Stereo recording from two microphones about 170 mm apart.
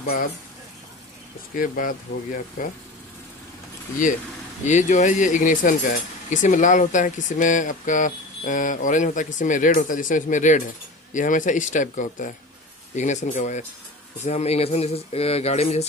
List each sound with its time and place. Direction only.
0.0 s speech: 60° left (ahead or behind)
1.5 s speech: 55° left (ahead or behind)
4.6 s speech: 45° left (ahead or behind)